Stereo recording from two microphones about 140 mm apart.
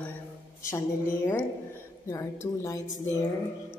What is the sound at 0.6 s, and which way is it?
Speech, 20° left (ahead or behind).